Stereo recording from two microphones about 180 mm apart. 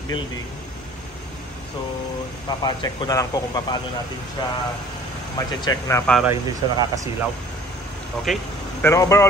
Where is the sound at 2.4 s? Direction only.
25° left (ahead or behind).